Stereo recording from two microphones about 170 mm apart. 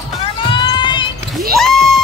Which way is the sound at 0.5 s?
25° left (ahead or behind).